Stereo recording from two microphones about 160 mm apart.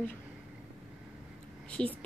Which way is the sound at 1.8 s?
5° left (ahead or behind).